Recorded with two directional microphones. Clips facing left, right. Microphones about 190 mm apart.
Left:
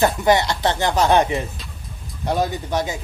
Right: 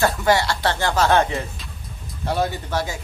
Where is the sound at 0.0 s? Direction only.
20° left (ahead or behind).